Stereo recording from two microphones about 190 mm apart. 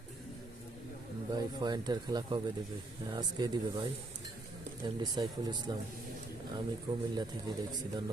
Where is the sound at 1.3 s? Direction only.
20° right (ahead or behind).